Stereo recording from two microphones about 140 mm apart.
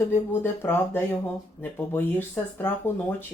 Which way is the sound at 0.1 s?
15° left (ahead or behind).